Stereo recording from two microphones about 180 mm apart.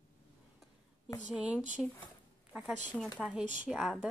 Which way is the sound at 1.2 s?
5° right (ahead or behind).